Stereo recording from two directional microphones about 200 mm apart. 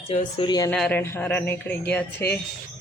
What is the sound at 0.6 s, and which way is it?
A man's voice, 5° left (ahead or behind).